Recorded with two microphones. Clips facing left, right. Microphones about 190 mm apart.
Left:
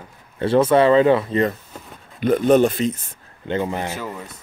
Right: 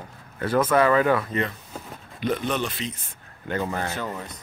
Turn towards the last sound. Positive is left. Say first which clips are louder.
# left 2 dB
turn(degrees=10)  # may be behind; listen again after turning